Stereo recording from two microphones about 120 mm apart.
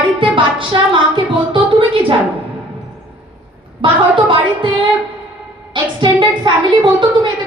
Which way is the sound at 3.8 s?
45° right (ahead or behind).